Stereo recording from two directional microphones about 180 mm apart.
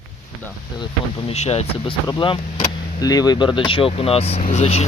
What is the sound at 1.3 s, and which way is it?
Speech, 35° left (ahead or behind).